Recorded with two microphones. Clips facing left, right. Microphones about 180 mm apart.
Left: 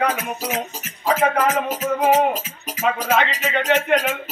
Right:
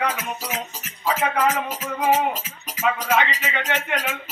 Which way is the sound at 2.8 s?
35° left (ahead or behind).